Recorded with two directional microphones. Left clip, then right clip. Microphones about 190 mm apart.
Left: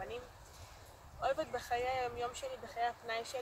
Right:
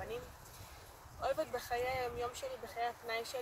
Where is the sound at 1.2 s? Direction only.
15° right (ahead or behind).